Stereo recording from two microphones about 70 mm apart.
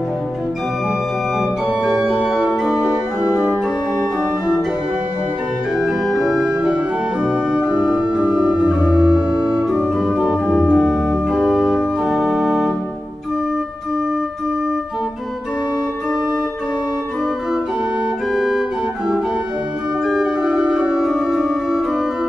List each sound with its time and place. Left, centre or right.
1.9 s organ: centre
5.8 s organ: centre
10.4 s organ: centre
18.3 s music: centre
20.1 s organ: centre
20.5 s music: centre
20.9 s music: centre